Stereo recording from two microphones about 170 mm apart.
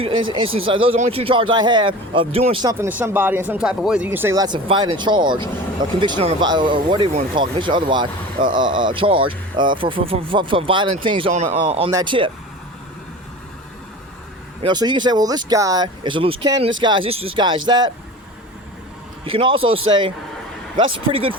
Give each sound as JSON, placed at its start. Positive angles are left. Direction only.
{"t": 0.0, "sound": "speech", "side_deg": -30}
{"t": 2.7, "sound": "speech", "side_deg": -10}
{"t": 11.9, "sound": "speech", "side_deg": -25}
{"t": 14.6, "sound": "speech", "side_deg": -25}
{"t": 19.2, "sound": "speech", "side_deg": -30}